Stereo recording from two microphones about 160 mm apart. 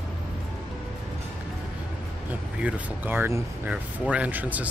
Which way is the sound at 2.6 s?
10° right (ahead or behind).